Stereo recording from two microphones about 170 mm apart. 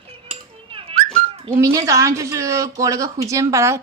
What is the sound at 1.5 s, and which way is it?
Speech, 15° right (ahead or behind).